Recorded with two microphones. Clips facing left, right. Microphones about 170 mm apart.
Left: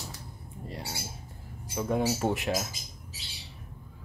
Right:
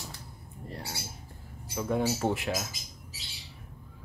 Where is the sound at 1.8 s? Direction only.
15° left (ahead or behind).